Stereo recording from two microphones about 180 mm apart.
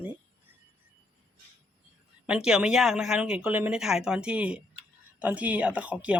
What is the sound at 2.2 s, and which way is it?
Speech, 5° right (ahead or behind).